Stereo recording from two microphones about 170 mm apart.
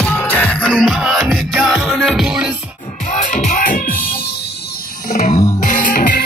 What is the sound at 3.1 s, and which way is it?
Music, 45° left (ahead or behind).